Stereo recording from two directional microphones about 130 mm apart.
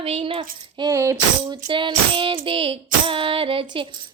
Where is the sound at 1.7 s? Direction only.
40° right (ahead or behind).